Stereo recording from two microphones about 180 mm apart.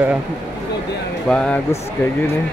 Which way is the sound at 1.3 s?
5° left (ahead or behind).